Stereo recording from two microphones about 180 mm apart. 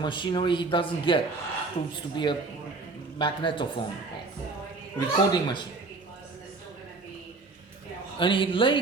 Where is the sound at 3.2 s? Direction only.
25° left (ahead or behind).